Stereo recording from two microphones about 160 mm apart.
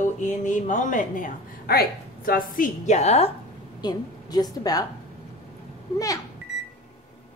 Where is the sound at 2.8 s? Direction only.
45° left (ahead or behind).